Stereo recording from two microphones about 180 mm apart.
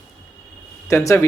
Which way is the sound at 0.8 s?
15° left (ahead or behind).